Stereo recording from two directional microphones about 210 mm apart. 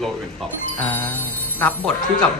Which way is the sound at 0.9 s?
10° left (ahead or behind).